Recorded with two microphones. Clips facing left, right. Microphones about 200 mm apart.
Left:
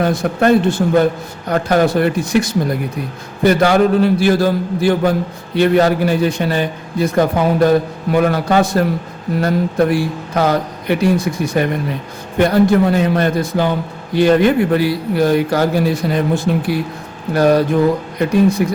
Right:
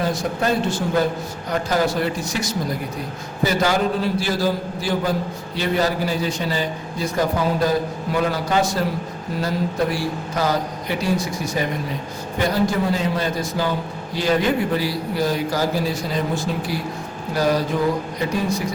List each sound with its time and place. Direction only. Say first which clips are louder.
0.0 s a man's voice: left 7 dB; 60° left (ahead or behind)